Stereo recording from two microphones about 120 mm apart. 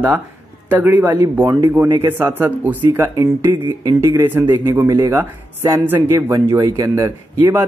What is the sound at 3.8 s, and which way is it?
Speech, 30° right (ahead or behind).